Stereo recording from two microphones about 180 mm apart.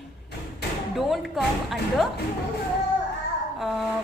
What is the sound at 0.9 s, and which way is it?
A woman's voice, centre (ahead or behind).